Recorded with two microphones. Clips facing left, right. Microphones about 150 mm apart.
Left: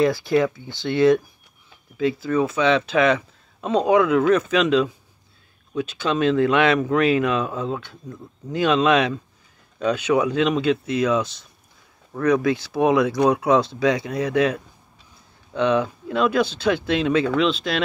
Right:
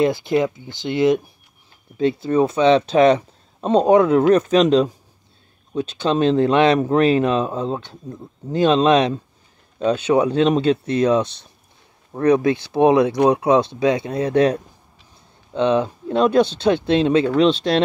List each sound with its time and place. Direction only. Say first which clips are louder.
0.0 s speech: right 1 dB; 20° right (ahead or behind)
2.0 s speech: right 3 dB; 30° right (ahead or behind)